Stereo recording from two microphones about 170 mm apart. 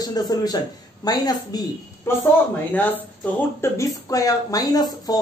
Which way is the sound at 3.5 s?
15° left (ahead or behind).